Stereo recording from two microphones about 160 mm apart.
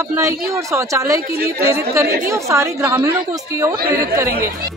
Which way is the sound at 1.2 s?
80° right.